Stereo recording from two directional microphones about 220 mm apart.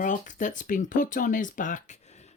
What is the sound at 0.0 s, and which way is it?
Speech, 35° left (ahead or behind).